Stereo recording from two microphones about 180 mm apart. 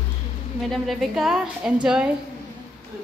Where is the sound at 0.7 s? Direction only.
Centre (ahead or behind).